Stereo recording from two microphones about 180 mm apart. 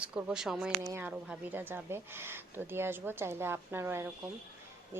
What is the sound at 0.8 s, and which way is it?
Speech, 15° right (ahead or behind).